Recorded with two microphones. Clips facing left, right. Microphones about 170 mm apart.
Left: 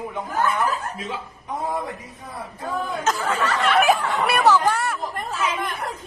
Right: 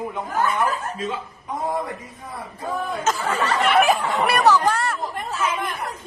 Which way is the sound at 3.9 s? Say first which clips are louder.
Right 1 dB; 20° right (ahead or behind).